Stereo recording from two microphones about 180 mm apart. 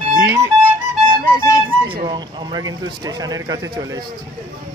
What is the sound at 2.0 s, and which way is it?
Speech, 25° right (ahead or behind).